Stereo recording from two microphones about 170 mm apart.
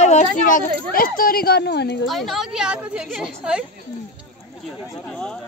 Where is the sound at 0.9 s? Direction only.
55° left (ahead or behind); by 2.0 s 80° left.